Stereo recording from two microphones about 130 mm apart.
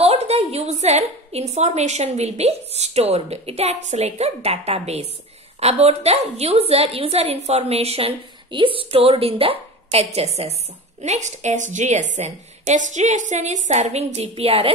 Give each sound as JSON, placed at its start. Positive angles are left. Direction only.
{"t": 0.0, "sound": "a woman's voice", "side_deg": -55}